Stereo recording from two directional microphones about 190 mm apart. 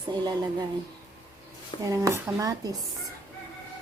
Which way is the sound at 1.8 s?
15° right (ahead or behind).